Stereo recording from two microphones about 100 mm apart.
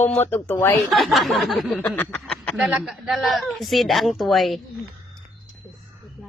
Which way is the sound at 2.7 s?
5° right (ahead or behind).